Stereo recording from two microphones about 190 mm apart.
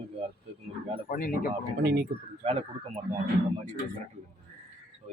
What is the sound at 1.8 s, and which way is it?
Speech, 55° right (ahead or behind).